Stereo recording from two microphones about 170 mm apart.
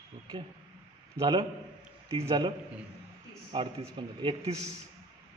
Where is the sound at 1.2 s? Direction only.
25° right (ahead or behind).